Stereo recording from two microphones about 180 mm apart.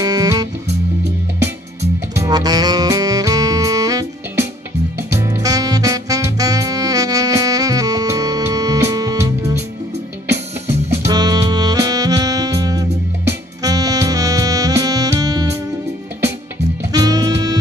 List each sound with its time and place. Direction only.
0.0 s music: 20° right (ahead or behind)
2.1 s saxophone: 20° right (ahead or behind)
4.9 s music: 15° right (ahead or behind)
10.9 s music: 20° right (ahead or behind)
16.9 s music: 20° right (ahead or behind)